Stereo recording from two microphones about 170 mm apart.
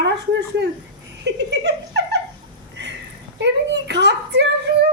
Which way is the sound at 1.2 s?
90° right.